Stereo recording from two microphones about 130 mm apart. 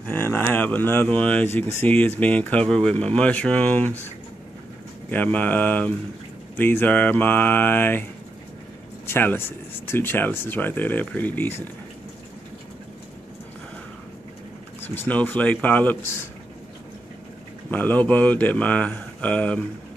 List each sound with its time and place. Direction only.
0.0 s speech: 15° left (ahead or behind)
5.1 s speech: 10° left (ahead or behind)
15.0 s speech: 15° left (ahead or behind)
17.6 s speech: 15° left (ahead or behind)